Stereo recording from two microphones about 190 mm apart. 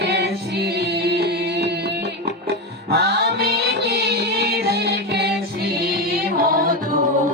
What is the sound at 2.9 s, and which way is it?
Music, 55° right (ahead or behind).